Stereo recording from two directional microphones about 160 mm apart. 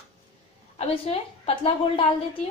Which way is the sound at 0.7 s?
40° left (ahead or behind).